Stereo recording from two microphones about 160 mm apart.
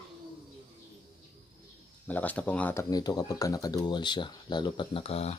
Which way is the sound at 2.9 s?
25° left (ahead or behind).